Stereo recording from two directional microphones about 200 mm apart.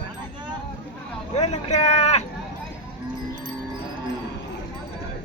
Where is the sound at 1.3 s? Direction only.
35° left (ahead or behind).